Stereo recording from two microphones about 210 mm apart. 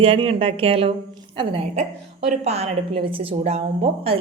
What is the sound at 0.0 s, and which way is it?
A woman's voice, 25° right (ahead or behind).